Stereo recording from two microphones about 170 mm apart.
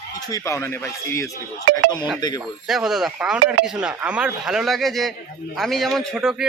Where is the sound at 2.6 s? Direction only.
5° right (ahead or behind).